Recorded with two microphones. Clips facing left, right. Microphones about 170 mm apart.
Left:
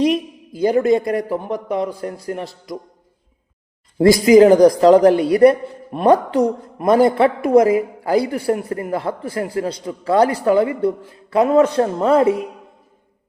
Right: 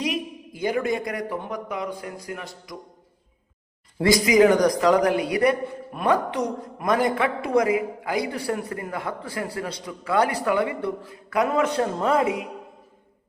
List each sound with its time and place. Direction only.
0.6 s a man's voice: 35° left (ahead or behind)
3.9 s a man's voice: 30° left (ahead or behind)